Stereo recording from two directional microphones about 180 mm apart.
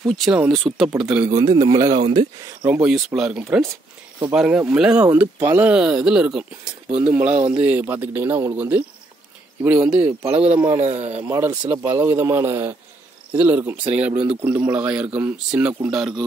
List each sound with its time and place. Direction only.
0.1 s speech: centre (ahead or behind)
1.3 s speech: 20° right (ahead or behind)
2.6 s speech: 5° right (ahead or behind)
10.8 s speech: 35° right (ahead or behind)
11.2 s speech: 15° right (ahead or behind)
13.8 s speech: 35° right (ahead or behind)
14.4 s speech: 10° right (ahead or behind)